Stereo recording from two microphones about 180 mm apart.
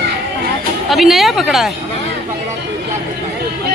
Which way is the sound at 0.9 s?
Centre (ahead or behind).